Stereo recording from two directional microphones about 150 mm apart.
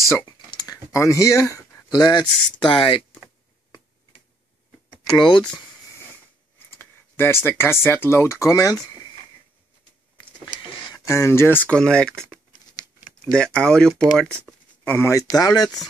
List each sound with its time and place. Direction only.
0.5 s a sound: 25° left (ahead or behind)
2.6 s speech: 35° left (ahead or behind)
5.1 s speech: 30° left (ahead or behind)
5.4 s a sound: 5° left (ahead or behind)
7.8 s speech: 15° left (ahead or behind)
10.9 s speech: 20° left (ahead or behind)
14.9 s speech: 15° left (ahead or behind)